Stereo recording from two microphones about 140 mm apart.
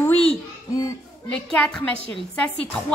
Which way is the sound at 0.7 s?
25° left (ahead or behind).